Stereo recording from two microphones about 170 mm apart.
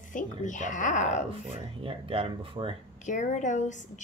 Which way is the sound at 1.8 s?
30° right (ahead or behind).